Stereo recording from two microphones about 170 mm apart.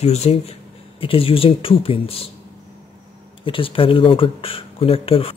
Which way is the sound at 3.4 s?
30° left (ahead or behind).